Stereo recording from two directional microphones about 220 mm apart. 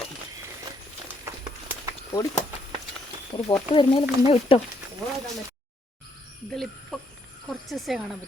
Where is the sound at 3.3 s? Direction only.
25° left (ahead or behind).